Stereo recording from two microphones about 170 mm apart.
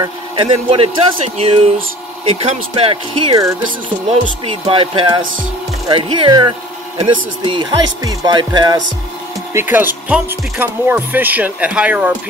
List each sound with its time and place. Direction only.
0.0 s speech: 30° right (ahead or behind)
9.5 s speech: 15° right (ahead or behind)